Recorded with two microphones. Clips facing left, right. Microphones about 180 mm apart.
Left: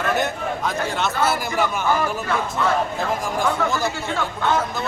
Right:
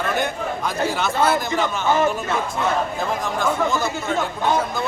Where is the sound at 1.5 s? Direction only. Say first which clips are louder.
Right 1 dB; 20° right (ahead or behind).